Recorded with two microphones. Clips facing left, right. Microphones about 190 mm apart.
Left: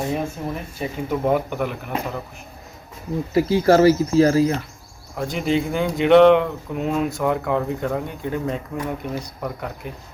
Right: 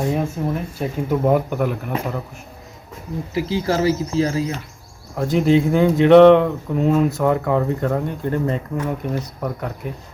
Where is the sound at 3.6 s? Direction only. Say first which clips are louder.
Left 7 dB; 70° left (ahead or behind).